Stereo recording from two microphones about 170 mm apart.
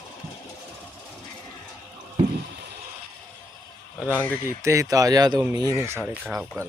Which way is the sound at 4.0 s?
10° right (ahead or behind).